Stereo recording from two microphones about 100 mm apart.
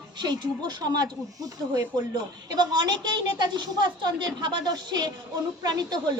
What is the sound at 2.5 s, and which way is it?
Speech, 45° right (ahead or behind).